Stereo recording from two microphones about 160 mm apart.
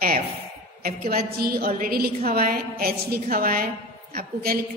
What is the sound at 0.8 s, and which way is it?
A woman's voice, 60° right (ahead or behind).